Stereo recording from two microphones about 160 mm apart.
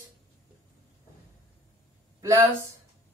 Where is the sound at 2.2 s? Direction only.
20° right (ahead or behind).